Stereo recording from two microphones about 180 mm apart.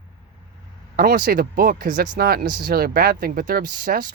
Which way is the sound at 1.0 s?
55° right (ahead or behind).